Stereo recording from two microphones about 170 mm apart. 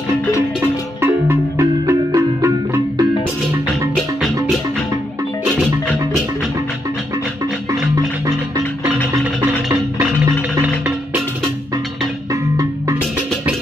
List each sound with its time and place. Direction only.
1.0 s marimba: 15° right (ahead or behind)
12.3 s music: 20° right (ahead or behind)